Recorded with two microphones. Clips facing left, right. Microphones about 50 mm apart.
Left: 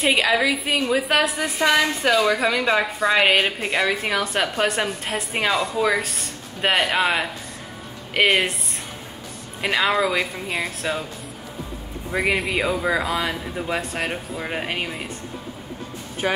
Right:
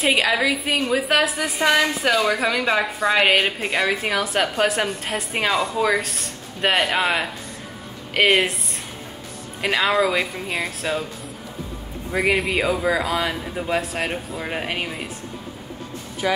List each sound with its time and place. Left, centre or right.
0.0 s a woman's voice: centre
12.1 s a woman's voice: centre
16.2 s speech: left